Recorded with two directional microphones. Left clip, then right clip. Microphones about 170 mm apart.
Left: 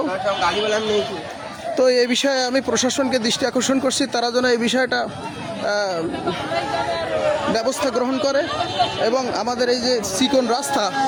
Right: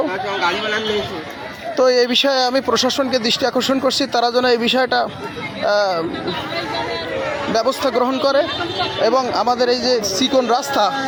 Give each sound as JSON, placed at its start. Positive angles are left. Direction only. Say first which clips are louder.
{"t": 1.7, "sound": "a man's voice", "louder": "right 3 dB", "side_deg": 25}
{"t": 7.7, "sound": "a man's voice", "louder": "right 3 dB", "side_deg": 10}